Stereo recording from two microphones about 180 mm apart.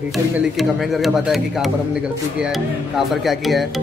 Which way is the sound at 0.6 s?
Centre (ahead or behind).